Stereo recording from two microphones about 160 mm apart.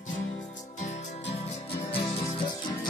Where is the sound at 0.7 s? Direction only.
45° left (ahead or behind).